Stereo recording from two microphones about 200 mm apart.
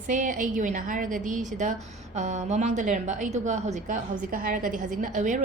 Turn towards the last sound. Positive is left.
turn(degrees=-40)  # may be behind; listen again after turning